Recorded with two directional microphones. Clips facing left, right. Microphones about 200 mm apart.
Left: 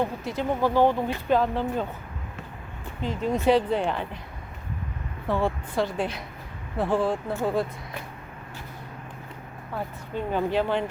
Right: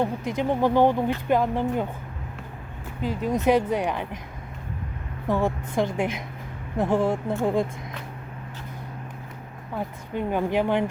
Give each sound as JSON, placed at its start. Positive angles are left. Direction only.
{"t": 0.0, "sound": "speech", "side_deg": -15}
{"t": 3.0, "sound": "speech", "side_deg": -10}
{"t": 5.3, "sound": "speech", "side_deg": -15}
{"t": 9.7, "sound": "speech", "side_deg": -15}